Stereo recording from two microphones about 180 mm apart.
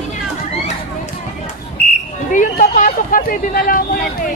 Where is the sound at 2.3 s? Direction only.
45° left (ahead or behind).